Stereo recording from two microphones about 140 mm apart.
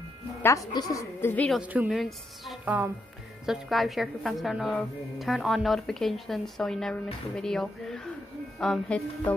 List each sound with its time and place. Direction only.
0.4 s a woman's voice: 20° left (ahead or behind)
1.3 s speech: 10° left (ahead or behind)
1.6 s speech: 10° right (ahead or behind)
1.9 s speech: centre (ahead or behind)
2.6 s a woman's voice: 10° right (ahead or behind); by 9.3 s 5° left (ahead or behind)